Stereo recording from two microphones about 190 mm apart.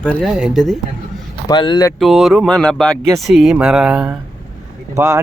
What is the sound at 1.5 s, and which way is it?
Speech, 20° left (ahead or behind).